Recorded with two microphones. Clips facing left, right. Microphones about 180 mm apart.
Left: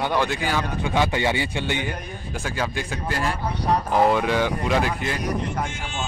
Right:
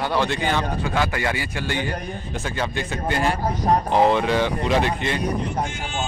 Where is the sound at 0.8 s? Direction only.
20° left (ahead or behind).